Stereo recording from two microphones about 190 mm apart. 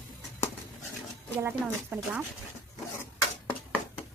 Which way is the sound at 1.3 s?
10° right (ahead or behind).